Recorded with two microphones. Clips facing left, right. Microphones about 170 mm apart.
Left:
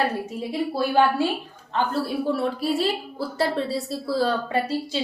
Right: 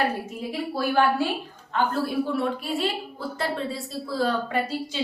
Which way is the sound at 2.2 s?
35° left (ahead or behind).